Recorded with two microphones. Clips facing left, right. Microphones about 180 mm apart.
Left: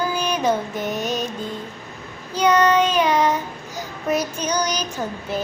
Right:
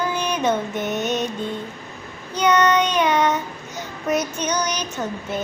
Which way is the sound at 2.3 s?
30° left (ahead or behind).